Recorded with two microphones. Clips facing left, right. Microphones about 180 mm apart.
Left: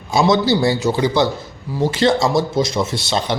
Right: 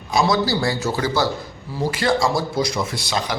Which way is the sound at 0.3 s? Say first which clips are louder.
Left 5 dB; 25° left (ahead or behind).